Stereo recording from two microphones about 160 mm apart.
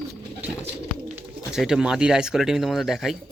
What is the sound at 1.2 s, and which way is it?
Speech, 5° right (ahead or behind).